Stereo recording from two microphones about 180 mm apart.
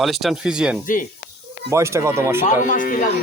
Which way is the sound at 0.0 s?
Centre (ahead or behind).